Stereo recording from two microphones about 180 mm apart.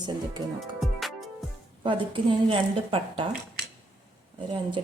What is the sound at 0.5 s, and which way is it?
Music, centre (ahead or behind).